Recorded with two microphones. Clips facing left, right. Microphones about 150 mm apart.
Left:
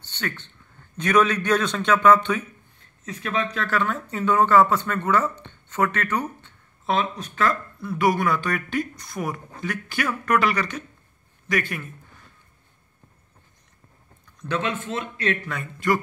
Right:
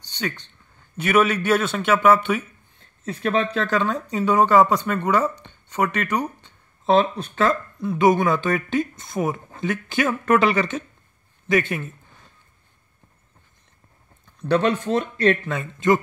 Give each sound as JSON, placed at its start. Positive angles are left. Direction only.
{"t": 0.0, "sound": "a sound", "side_deg": -15}
{"t": 0.9, "sound": "speech", "side_deg": -10}
{"t": 3.0, "sound": "speech", "side_deg": -35}
{"t": 3.5, "sound": "speech", "side_deg": -20}
{"t": 6.9, "sound": "a man's voice", "side_deg": -30}
{"t": 14.2, "sound": "speech", "side_deg": -35}
{"t": 15.5, "sound": "speech", "side_deg": -20}